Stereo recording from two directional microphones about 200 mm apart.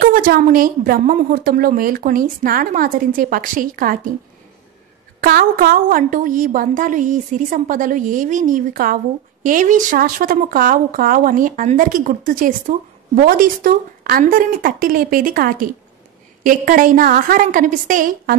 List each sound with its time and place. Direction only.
0.0 s a woman's voice: 45° right (ahead or behind)
5.2 s a woman's voice: 45° right (ahead or behind)